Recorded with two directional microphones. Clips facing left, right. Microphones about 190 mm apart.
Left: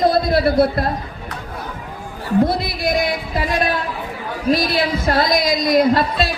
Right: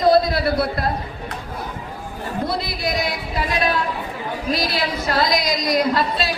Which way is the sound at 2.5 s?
50° left (ahead or behind).